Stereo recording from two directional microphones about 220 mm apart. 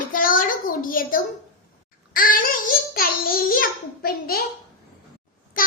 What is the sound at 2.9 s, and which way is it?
Babbling, 40° left (ahead or behind).